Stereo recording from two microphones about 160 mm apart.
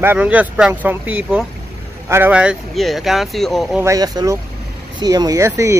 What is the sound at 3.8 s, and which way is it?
Speech, 20° right (ahead or behind).